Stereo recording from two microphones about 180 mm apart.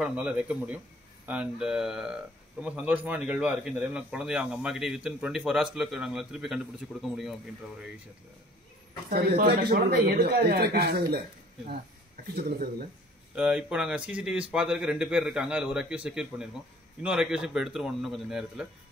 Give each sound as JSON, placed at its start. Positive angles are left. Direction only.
{"t": 0.0, "sound": "a man's voice", "side_deg": -5}
{"t": 9.1, "sound": "speech", "side_deg": -60}
{"t": 12.4, "sound": "speech", "side_deg": -60}
{"t": 13.3, "sound": "speech", "side_deg": -5}